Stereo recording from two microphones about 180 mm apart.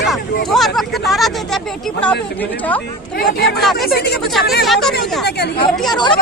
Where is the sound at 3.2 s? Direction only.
60° left (ahead or behind).